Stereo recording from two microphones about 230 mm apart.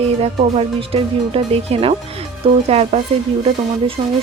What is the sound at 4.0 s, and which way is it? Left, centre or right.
Speech, centre.